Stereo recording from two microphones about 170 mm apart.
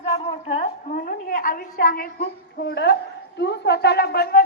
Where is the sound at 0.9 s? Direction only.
55° left (ahead or behind); by 4.4 s 70° left (ahead or behind).